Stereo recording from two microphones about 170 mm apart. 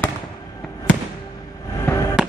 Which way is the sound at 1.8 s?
15° left (ahead or behind).